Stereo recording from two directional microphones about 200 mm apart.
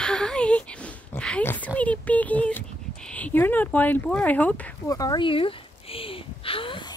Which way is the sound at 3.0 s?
5° left (ahead or behind).